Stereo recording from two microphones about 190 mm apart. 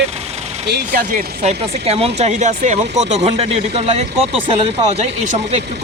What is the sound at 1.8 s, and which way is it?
Speech, 30° right (ahead or behind).